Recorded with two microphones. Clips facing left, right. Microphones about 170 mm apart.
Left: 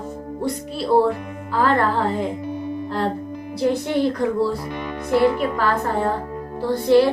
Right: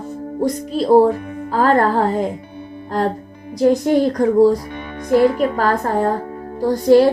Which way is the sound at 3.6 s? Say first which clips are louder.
Right 6 dB; 40° right (ahead or behind).